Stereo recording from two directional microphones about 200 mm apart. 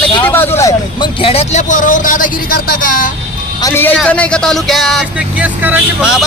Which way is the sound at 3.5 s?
15° left (ahead or behind).